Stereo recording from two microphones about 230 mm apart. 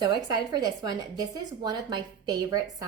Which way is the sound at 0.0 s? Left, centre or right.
Centre.